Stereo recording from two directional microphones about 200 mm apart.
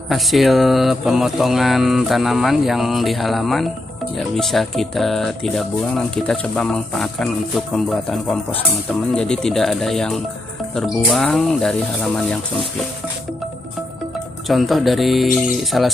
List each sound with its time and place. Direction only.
0.1 s speech: centre (ahead or behind)
14.5 s speech: centre (ahead or behind)